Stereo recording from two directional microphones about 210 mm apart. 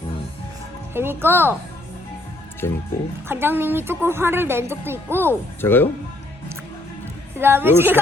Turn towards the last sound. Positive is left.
turn(degrees=-10)  # may be behind; listen again after turning